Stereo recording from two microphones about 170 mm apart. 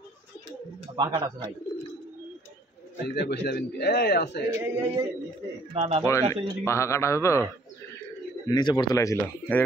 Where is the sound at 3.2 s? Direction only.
70° left (ahead or behind).